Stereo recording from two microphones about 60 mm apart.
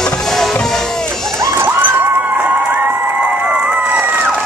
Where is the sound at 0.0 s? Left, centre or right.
Centre.